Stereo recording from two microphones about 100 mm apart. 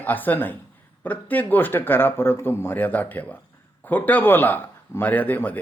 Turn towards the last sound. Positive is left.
turn(degrees=15)  # may be behind; listen again after turning